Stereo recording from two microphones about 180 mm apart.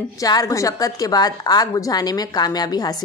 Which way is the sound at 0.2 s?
20° left (ahead or behind).